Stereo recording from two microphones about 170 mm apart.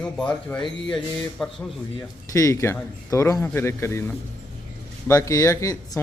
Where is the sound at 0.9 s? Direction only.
5° left (ahead or behind).